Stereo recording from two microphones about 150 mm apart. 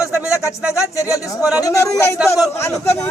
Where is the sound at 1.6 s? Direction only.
20° left (ahead or behind).